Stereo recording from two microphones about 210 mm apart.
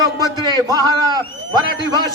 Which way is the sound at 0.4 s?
20° right (ahead or behind).